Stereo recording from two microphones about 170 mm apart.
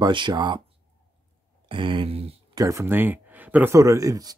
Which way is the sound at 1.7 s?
30° right (ahead or behind).